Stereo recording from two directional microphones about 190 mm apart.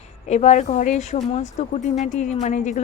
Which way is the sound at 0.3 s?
35° left (ahead or behind).